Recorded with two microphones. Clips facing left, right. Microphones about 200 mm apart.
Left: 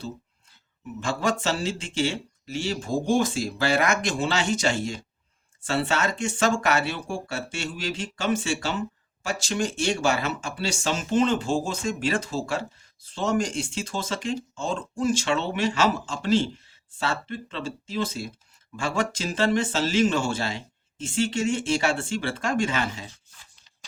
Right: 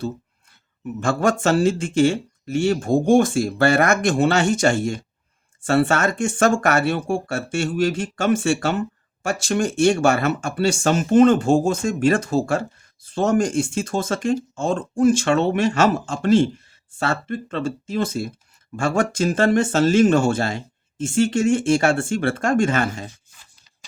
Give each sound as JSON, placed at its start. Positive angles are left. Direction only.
{"t": 0.9, "sound": "speech", "side_deg": -50}